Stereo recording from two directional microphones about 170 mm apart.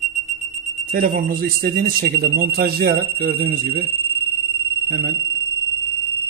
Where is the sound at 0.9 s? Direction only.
60° right (ahead or behind).